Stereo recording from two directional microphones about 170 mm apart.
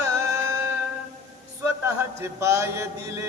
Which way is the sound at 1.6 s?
15° right (ahead or behind).